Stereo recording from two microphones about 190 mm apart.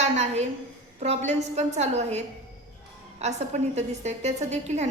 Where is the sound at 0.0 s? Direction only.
35° right (ahead or behind).